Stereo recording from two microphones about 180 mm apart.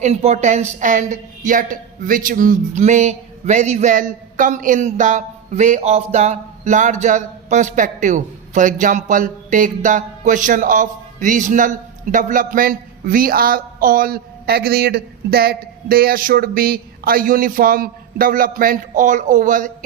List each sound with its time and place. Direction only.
0.0 s a woman's voice: 35° right (ahead or behind)